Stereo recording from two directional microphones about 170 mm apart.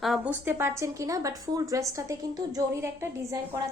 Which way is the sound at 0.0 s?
Centre (ahead or behind).